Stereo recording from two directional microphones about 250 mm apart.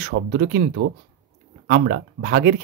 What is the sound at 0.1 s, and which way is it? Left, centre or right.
Speech, right.